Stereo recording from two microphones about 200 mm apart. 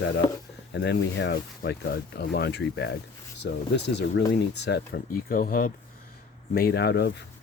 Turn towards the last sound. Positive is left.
turn(degrees=55)  # may be behind; listen again after turning